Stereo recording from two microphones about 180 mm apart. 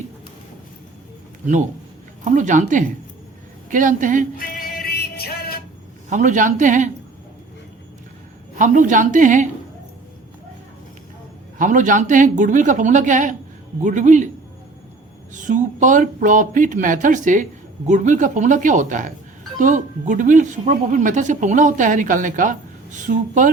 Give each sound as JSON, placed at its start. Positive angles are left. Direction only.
{"t": 2.2, "sound": "speech", "side_deg": -45}
{"t": 4.4, "sound": "music", "side_deg": 55}
{"t": 6.1, "sound": "speech", "side_deg": -45}
{"t": 8.5, "sound": "speech", "side_deg": -45}
{"t": 11.5, "sound": "speech", "side_deg": -45}
{"t": 15.3, "sound": "speech", "side_deg": -45}